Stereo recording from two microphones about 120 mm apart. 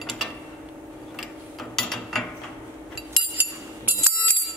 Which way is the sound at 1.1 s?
Centre (ahead or behind).